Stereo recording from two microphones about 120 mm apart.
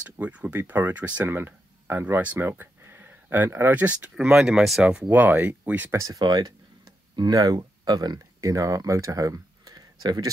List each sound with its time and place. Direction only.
0.2 s speech: 10° right (ahead or behind); by 10.3 s 35° right (ahead or behind)